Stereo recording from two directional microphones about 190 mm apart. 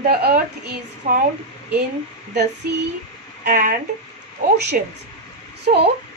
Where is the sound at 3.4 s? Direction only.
45° right (ahead or behind).